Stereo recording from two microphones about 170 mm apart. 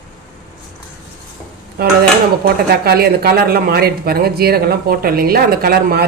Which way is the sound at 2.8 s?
65° right (ahead or behind).